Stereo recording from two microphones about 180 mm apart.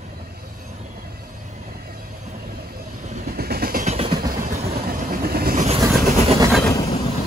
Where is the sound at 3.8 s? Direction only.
30° right (ahead or behind).